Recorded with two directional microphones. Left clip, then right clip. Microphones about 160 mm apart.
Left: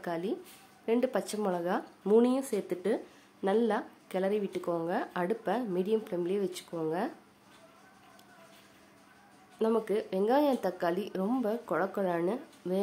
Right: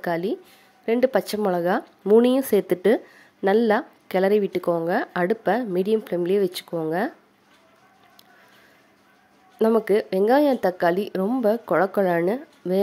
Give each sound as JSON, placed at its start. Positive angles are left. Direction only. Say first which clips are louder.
{"t": 0.0, "sound": "speech", "louder": "right 9 dB", "side_deg": -35}
{"t": 9.6, "sound": "speech", "louder": "right 10 dB", "side_deg": -40}